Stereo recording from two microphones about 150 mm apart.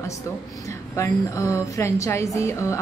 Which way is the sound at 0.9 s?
20° left (ahead or behind).